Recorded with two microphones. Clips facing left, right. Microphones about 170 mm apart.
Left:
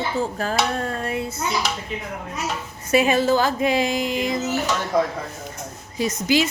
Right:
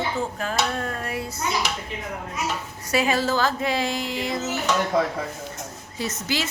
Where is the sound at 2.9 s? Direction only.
20° left (ahead or behind).